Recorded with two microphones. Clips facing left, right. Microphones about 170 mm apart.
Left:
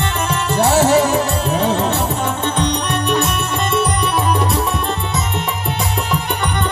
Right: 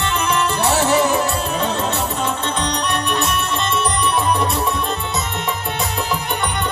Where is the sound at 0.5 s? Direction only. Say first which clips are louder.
Left 6 dB; 45° left (ahead or behind).